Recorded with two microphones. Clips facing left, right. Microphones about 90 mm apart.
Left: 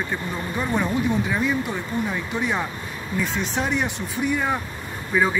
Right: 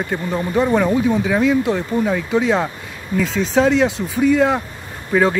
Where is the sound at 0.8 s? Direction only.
85° right.